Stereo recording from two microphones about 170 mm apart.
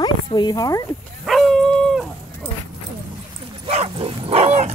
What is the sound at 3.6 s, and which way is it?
Dog, 35° right (ahead or behind).